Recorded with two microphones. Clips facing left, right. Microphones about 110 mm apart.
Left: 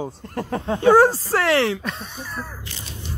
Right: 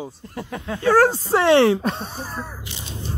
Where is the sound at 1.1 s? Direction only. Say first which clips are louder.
Right 4 dB; 25° right (ahead or behind).